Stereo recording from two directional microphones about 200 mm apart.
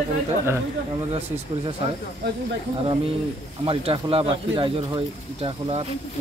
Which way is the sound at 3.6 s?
30° right (ahead or behind).